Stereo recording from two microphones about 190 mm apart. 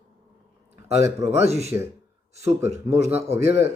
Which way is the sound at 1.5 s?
35° right (ahead or behind).